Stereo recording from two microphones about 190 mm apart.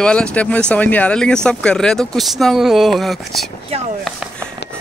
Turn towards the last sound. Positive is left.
turn(degrees=0)  # may be behind; listen again after turning